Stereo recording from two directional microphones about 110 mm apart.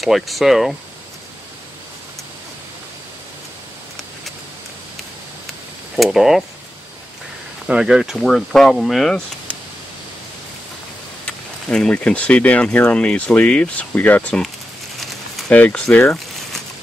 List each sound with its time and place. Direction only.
0.0 s speech: centre (ahead or behind)
5.9 s speech: centre (ahead or behind)
7.6 s speech: 5° right (ahead or behind)
11.2 s speech: 5° left (ahead or behind)
15.0 s a sound: centre (ahead or behind)
15.5 s speech: 10° left (ahead or behind)